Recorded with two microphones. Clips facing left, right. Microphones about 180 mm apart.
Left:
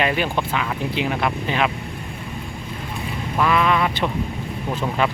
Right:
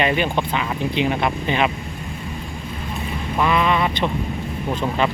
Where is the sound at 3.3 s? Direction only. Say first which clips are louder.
Even; centre (ahead or behind).